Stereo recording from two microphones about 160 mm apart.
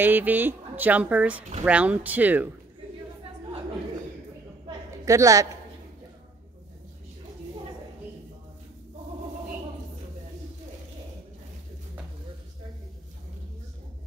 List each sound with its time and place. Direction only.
0.0 s speech: 10° right (ahead or behind)
5.0 s a woman's voice: 20° right (ahead or behind)